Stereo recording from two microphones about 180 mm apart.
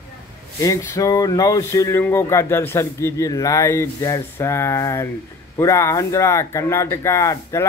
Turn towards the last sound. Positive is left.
turn(degrees=15)  # may be behind; listen again after turning